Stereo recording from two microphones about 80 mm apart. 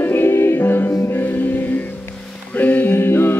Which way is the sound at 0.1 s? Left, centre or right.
Left.